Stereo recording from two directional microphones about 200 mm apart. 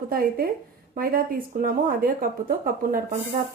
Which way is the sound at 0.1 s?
45° right (ahead or behind).